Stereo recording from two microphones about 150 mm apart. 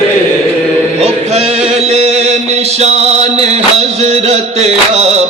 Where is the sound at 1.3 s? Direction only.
45° right (ahead or behind).